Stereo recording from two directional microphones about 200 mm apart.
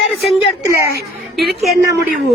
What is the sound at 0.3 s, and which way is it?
Speech, 25° left (ahead or behind).